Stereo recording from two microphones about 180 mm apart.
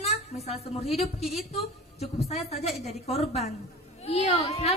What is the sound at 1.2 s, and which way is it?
Speech, centre (ahead or behind).